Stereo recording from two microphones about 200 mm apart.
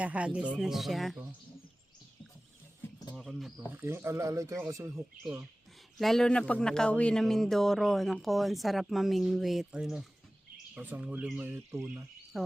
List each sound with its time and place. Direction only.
0.0 s speech: 5° right (ahead or behind)
3.2 s speech: centre (ahead or behind)
3.7 s speech: 10° right (ahead or behind)
6.0 s speech: centre (ahead or behind)
12.3 s speech: centre (ahead or behind)